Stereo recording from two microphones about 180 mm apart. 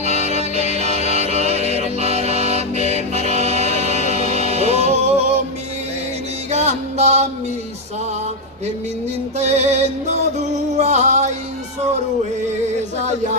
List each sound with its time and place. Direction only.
0.0 s music: 40° right (ahead or behind)
6.5 s music: 40° right (ahead or behind)
9.4 s music: 40° right (ahead or behind)